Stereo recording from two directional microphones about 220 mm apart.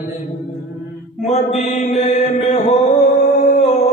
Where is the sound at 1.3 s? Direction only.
30° left (ahead or behind).